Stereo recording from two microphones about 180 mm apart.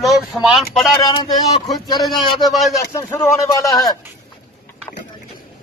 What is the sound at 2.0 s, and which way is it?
Speech, centre (ahead or behind).